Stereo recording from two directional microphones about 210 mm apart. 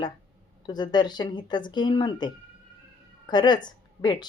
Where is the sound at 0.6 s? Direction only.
20° left (ahead or behind).